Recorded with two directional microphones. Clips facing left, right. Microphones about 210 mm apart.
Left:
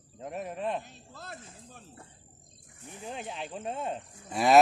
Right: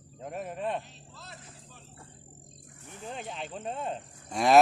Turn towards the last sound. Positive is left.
turn(degrees=0)  # may be behind; listen again after turning